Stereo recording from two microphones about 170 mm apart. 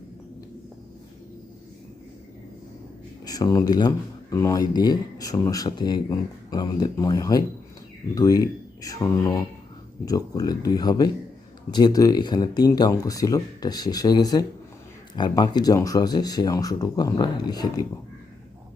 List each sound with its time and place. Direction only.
3.2 s speech: 20° left (ahead or behind)